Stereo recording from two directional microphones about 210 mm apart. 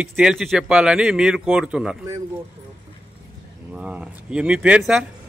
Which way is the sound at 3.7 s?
5° right (ahead or behind).